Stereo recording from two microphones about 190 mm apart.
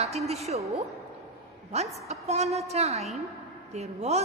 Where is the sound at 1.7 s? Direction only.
35° right (ahead or behind).